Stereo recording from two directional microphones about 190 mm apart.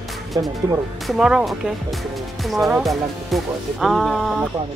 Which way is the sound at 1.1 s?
5° right (ahead or behind).